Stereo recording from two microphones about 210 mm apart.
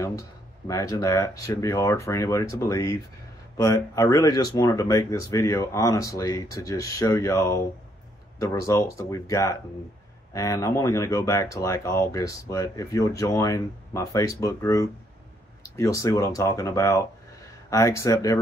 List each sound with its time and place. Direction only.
0.7 s speech: 15° left (ahead or behind)